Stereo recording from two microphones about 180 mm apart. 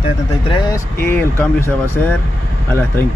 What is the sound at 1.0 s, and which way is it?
Speech, 10° left (ahead or behind).